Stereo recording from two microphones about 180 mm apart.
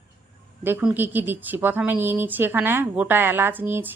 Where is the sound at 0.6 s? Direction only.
10° right (ahead or behind).